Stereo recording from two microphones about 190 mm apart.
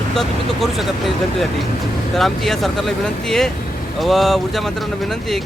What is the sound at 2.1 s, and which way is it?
Speech, centre (ahead or behind).